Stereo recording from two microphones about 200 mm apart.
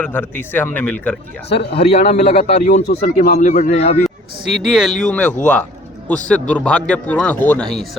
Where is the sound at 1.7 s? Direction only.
30° left (ahead or behind).